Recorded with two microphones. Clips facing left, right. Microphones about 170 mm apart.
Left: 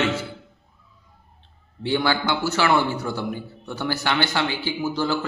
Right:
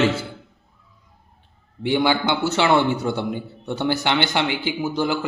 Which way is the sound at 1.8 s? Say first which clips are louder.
Right 3 dB; 15° right (ahead or behind).